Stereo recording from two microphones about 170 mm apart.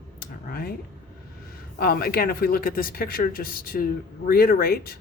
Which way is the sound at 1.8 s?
60° left (ahead or behind).